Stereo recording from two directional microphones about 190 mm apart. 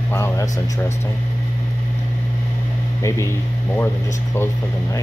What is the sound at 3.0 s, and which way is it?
Speech, 15° left (ahead or behind).